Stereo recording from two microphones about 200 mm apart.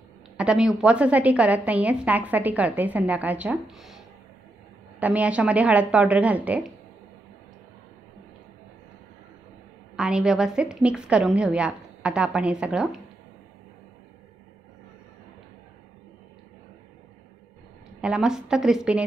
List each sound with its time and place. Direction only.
0.4 s a sound: 5° right (ahead or behind)
0.7 s a woman's voice: 5° right (ahead or behind)
5.0 s a woman's voice: 5° right (ahead or behind)
9.9 s a woman's voice: 5° right (ahead or behind)
18.0 s a woman's voice: 5° right (ahead or behind)